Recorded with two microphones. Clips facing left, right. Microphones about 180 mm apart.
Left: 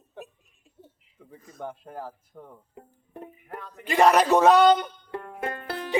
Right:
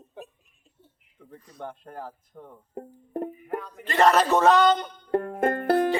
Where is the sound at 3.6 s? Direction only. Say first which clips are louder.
Right 2 dB; centre (ahead or behind).